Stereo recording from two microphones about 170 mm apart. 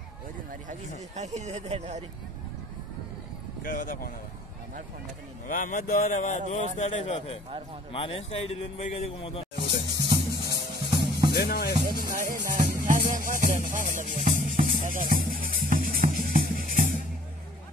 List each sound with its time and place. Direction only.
0.5 s speech: 45° right (ahead or behind)
3.6 s speech: 55° left (ahead or behind)
5.5 s speech: 50° left (ahead or behind); by 9.9 s 30° left (ahead or behind)
10.9 s drum: 25° right (ahead or behind)
11.3 s speech: 70° left (ahead or behind)
11.9 s music: 55° right (ahead or behind)